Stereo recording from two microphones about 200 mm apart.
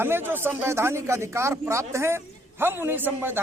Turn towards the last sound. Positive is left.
turn(degrees=-10)  # may be behind; listen again after turning